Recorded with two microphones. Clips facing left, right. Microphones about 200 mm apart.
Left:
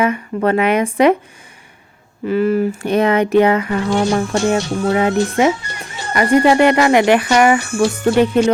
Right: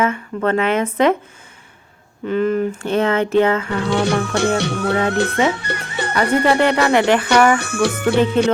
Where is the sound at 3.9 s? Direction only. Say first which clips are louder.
Left 1 dB; 65° right (ahead or behind).